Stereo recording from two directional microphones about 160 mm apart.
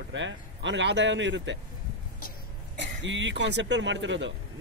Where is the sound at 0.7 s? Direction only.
90° right.